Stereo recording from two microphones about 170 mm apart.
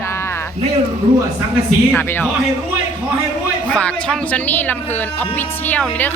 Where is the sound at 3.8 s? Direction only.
5° left (ahead or behind).